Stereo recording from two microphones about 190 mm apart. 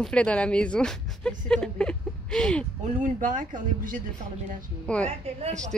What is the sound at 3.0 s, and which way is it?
Speech, 45° right (ahead or behind).